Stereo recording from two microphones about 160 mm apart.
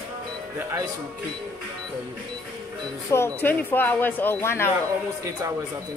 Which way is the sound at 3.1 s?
15° left (ahead or behind).